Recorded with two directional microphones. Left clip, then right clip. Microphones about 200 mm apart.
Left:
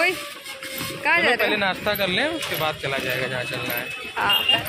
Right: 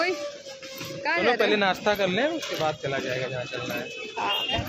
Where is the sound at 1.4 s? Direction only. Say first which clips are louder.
Left 1 dB; 55° right (ahead or behind).